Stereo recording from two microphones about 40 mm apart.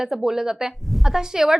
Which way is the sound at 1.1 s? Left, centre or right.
Centre.